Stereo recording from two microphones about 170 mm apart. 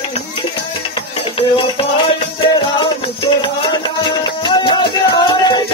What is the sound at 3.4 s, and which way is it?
Music, 30° left (ahead or behind).